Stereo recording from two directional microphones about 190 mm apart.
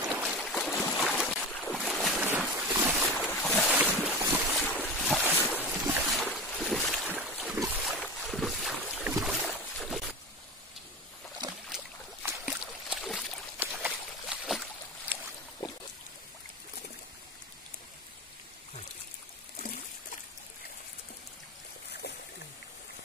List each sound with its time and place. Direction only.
0.1 s boat: centre (ahead or behind)
2.2 s boat: 10° right (ahead or behind)
3.2 s boat: 5° left (ahead or behind)
3.7 s boat: 10° right (ahead or behind)
6.2 s boat: centre (ahead or behind)
7.5 s boat: 15° right (ahead or behind)
7.8 s boat: centre (ahead or behind)
9.5 s a sound: centre (ahead or behind)
12.3 s a sound: 5° right (ahead or behind)
22.0 s a sound: 60° left (ahead or behind)